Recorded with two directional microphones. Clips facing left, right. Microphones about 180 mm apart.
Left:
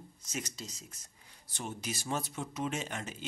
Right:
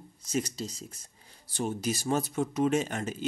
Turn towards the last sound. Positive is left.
turn(degrees=-45)  # may be behind; listen again after turning